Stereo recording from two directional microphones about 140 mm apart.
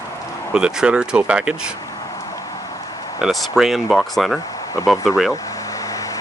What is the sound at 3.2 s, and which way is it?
Speech, centre (ahead or behind).